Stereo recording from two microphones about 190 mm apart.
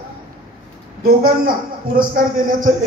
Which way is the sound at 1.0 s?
50° right (ahead or behind).